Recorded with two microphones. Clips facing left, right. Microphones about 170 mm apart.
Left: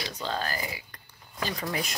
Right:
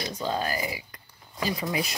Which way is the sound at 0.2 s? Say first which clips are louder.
Right 3 dB; 10° right (ahead or behind).